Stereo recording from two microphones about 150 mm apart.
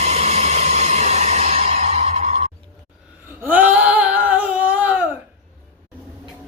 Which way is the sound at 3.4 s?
10° right (ahead or behind).